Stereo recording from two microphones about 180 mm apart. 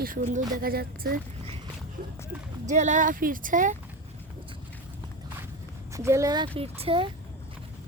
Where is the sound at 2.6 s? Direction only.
40° right (ahead or behind).